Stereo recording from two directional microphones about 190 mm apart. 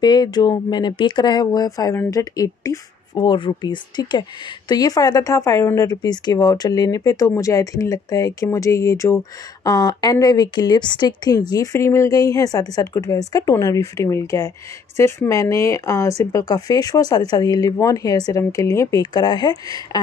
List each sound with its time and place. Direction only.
0.0 s speech: 20° left (ahead or behind)